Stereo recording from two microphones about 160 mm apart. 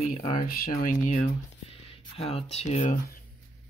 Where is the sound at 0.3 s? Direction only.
60° left (ahead or behind).